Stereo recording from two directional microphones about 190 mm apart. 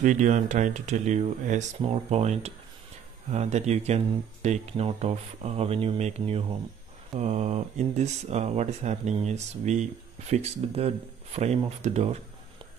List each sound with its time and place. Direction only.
0.0 s speech: 40° right (ahead or behind)